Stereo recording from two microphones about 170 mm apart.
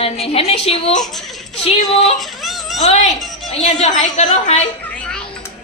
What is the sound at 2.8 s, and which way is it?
A woman's voice, 40° left (ahead or behind).